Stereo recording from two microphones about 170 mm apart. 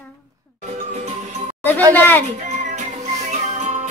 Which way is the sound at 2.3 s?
45° right (ahead or behind).